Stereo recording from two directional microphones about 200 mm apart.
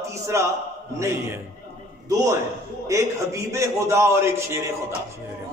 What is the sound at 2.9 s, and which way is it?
A man's voice, 15° right (ahead or behind).